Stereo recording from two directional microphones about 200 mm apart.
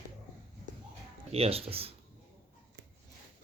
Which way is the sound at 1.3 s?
30° right (ahead or behind).